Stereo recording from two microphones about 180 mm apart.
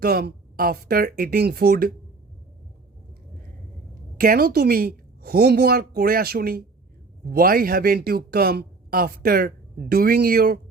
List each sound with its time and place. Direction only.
0.0 s a woman's voice: 60° right (ahead or behind)
4.2 s a woman's voice: 55° right (ahead or behind)